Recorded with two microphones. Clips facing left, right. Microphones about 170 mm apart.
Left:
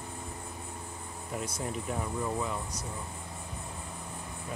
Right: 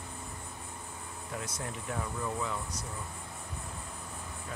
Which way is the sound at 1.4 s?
10° left (ahead or behind).